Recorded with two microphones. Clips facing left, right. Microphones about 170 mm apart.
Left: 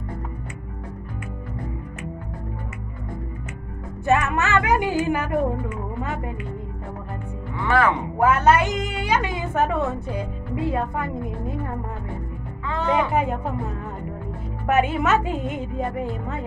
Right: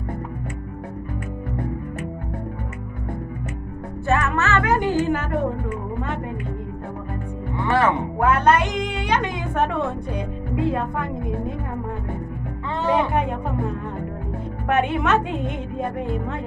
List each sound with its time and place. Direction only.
4.0 s music: 15° left (ahead or behind)
7.6 s speech: 25° right (ahead or behind)
8.2 s a woman's voice: 5° left (ahead or behind)
12.9 s a woman's voice: 5° left (ahead or behind)
14.7 s a woman's voice: 5° left (ahead or behind)